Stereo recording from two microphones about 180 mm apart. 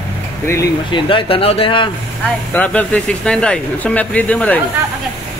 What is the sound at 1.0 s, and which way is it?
Speech, 30° left (ahead or behind).